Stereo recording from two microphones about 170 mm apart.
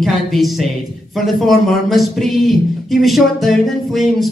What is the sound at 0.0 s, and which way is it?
A man's voice, centre (ahead or behind).